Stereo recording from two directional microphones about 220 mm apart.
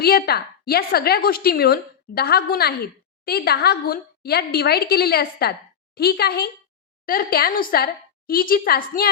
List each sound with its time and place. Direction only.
0.0 s a woman's voice: 45° left (ahead or behind)